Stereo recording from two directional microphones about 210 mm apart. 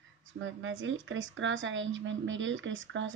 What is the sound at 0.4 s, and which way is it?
A woman's voice, 65° right (ahead or behind).